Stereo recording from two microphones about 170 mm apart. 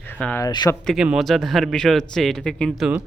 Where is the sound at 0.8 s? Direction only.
5° left (ahead or behind).